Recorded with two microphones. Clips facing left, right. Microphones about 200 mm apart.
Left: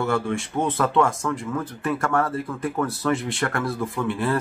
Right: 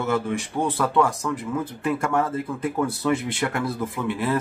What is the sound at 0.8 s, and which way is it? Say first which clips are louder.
Speech: left 1 dB; centre (ahead or behind).